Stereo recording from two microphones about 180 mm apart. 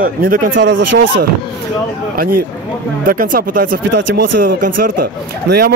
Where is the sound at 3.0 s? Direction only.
50° right (ahead or behind).